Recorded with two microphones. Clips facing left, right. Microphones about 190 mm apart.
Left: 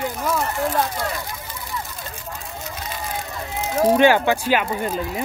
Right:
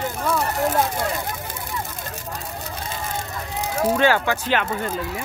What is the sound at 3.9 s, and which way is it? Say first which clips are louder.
Speech: left 4 dB; 15° left (ahead or behind).